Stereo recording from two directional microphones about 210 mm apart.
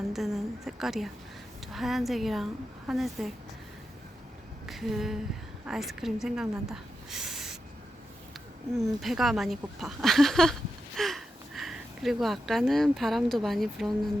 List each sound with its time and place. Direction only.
0.1 s a woman's voice: centre (ahead or behind)
4.6 s a sound: centre (ahead or behind)
5.6 s a woman's voice: centre (ahead or behind)
9.0 s a woman's voice: centre (ahead or behind)